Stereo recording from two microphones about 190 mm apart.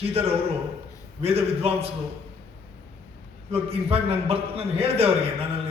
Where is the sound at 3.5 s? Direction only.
30° right (ahead or behind).